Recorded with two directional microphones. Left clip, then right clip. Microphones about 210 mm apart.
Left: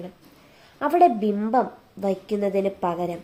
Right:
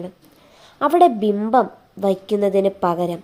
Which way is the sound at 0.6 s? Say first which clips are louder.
Right 4 dB; 15° right (ahead or behind).